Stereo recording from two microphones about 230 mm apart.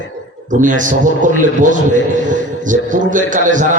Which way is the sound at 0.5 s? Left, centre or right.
Right.